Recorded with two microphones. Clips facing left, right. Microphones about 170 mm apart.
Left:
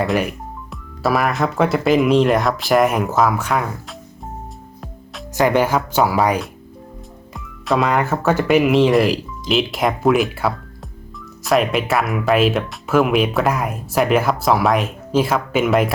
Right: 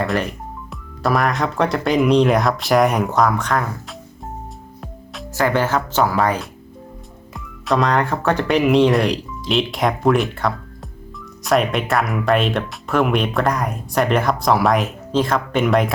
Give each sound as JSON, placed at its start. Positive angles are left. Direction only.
{"t": 0.0, "sound": "speech", "side_deg": 5}
{"t": 5.3, "sound": "speech", "side_deg": 15}